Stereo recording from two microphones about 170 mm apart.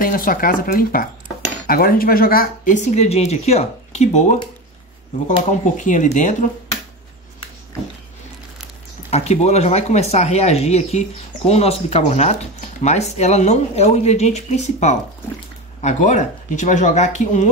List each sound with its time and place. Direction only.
0.0 s speech: 55° left (ahead or behind)
5.8 s speech: 50° left (ahead or behind)
9.1 s speech: 40° left (ahead or behind)